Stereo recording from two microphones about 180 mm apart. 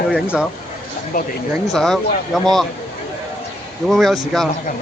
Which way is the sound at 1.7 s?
Centre (ahead or behind).